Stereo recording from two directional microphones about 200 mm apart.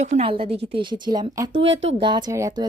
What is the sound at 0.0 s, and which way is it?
Speech, 30° right (ahead or behind).